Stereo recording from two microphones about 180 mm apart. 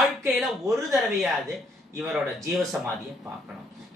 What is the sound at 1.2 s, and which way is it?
Speech, centre (ahead or behind).